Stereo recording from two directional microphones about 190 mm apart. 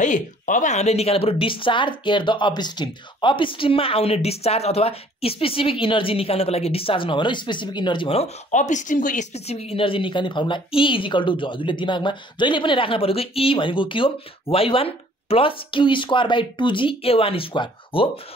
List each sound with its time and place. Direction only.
0.0 s speech: 40° left (ahead or behind)